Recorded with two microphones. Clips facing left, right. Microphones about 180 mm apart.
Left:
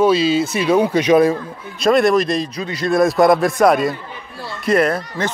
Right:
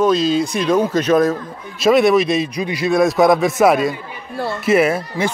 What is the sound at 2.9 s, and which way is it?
A man's voice, centre (ahead or behind).